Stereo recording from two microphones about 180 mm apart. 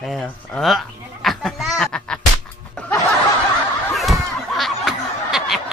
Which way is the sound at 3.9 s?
Centre (ahead or behind).